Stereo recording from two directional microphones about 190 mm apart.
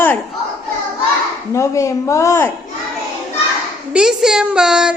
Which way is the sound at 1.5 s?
15° left (ahead or behind).